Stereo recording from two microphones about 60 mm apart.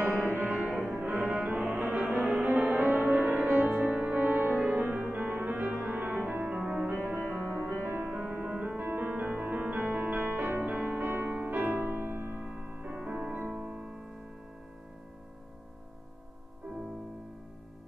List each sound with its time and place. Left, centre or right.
0.0 s music: right
1.6 s music: centre
2.3 s music: right
7.5 s music: right
8.1 s music: centre